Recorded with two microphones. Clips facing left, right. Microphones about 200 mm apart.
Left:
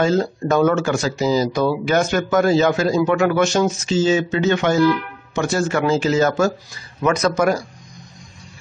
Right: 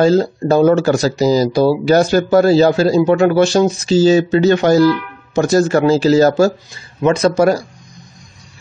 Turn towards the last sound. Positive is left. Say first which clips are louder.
# right 5 dB
turn(degrees=-30)  # may be behind; listen again after turning